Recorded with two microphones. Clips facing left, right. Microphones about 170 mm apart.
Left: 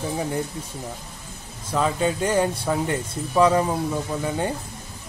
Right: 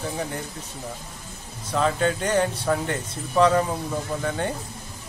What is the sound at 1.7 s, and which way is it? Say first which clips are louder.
Speech: even; 5° left (ahead or behind).